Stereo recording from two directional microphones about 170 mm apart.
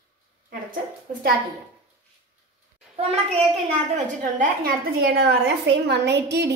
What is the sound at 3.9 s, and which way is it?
A woman's voice, 50° right (ahead or behind).